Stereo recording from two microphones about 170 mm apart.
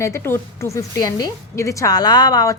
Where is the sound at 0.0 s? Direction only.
15° left (ahead or behind).